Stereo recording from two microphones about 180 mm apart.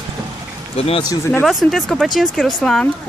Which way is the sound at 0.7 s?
35° left (ahead or behind).